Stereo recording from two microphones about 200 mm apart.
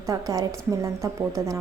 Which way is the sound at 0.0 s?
15° right (ahead or behind).